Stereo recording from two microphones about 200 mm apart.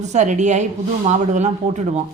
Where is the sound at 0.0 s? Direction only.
35° right (ahead or behind).